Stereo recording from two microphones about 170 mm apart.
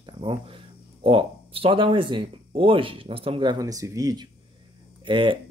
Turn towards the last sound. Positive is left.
turn(degrees=-30)  # may be behind; listen again after turning